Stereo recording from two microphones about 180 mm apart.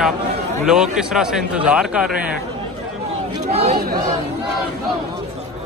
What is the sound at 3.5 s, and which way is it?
Speech, 35° right (ahead or behind).